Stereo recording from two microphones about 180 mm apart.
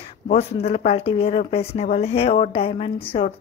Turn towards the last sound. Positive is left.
turn(degrees=30)  # may be behind; listen again after turning